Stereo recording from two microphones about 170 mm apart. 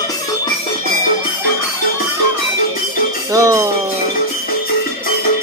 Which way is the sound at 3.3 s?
20° right (ahead or behind).